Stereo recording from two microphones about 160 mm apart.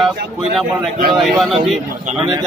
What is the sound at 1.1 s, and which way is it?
Speech, centre (ahead or behind).